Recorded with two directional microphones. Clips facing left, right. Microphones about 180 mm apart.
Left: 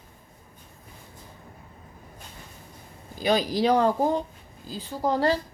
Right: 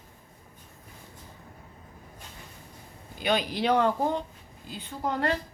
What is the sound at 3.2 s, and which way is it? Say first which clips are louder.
Speech: left 4 dB; 35° left (ahead or behind).